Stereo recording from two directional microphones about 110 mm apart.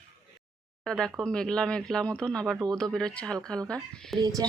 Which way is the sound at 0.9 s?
5° left (ahead or behind).